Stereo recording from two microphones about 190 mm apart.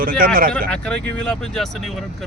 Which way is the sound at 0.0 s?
50° right (ahead or behind).